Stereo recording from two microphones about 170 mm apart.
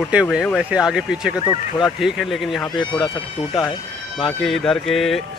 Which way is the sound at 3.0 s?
30° left (ahead or behind).